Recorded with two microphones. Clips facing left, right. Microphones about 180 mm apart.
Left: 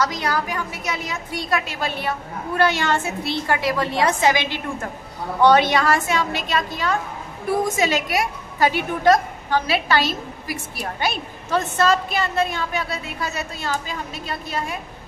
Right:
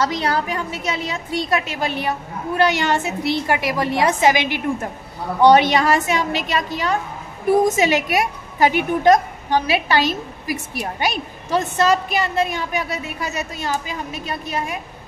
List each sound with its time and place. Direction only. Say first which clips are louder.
0.0 s a woman's voice: right 2 dB; 25° right (ahead or behind)